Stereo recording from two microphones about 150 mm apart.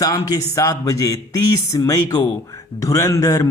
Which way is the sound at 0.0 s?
25° left (ahead or behind).